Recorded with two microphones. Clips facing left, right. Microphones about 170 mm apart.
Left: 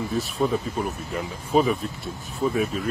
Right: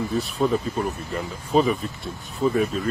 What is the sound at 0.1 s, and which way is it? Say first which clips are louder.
Speech: right 1 dB; centre (ahead or behind).